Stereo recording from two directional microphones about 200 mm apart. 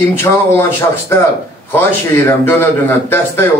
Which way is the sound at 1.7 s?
10° left (ahead or behind).